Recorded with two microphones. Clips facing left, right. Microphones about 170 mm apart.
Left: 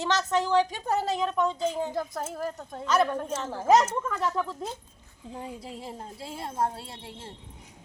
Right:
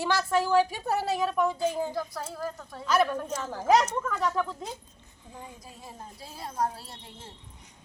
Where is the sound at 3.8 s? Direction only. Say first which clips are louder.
Even; centre (ahead or behind).